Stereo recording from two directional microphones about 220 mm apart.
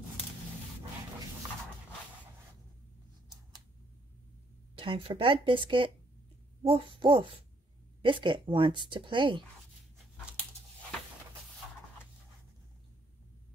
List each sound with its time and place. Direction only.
4.7 s a woman's voice: 25° right (ahead or behind)